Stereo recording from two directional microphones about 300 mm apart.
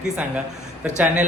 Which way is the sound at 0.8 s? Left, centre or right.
Centre.